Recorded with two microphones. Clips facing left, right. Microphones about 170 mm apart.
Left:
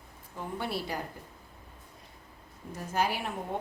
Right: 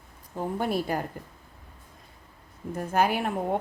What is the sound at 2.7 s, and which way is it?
Speech, 55° right (ahead or behind).